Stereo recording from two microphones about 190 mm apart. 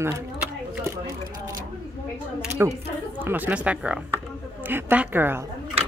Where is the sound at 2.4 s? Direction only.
15° right (ahead or behind).